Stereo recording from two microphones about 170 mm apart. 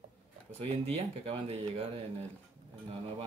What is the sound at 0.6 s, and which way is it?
Speech, 35° right (ahead or behind).